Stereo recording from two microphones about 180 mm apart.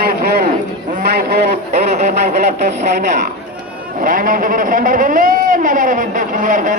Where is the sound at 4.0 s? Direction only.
50° right (ahead or behind).